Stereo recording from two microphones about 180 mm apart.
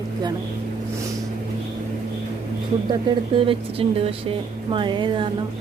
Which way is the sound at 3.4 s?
30° right (ahead or behind).